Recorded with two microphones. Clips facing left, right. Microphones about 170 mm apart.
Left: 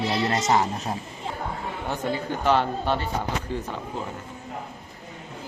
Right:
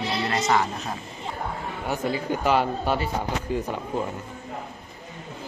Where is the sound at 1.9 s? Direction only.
10° right (ahead or behind).